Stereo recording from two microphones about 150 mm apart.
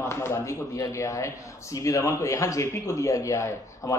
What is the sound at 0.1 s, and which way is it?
A man's voice, 15° left (ahead or behind).